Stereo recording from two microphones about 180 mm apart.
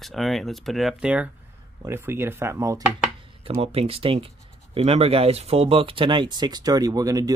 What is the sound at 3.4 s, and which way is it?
Speech, 35° right (ahead or behind).